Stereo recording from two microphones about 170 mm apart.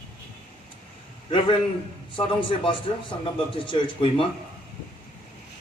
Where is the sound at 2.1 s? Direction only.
30° left (ahead or behind).